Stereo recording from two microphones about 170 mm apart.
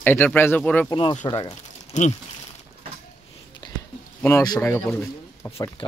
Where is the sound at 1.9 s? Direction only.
45° left (ahead or behind).